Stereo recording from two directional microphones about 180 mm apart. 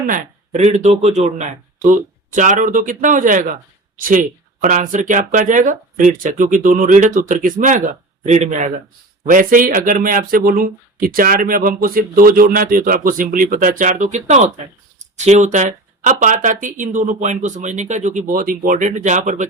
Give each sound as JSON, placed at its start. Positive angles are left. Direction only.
{"t": 0.1, "sound": "speech", "side_deg": -45}